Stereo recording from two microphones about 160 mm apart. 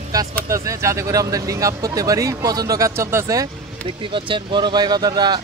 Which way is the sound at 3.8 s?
30° right (ahead or behind).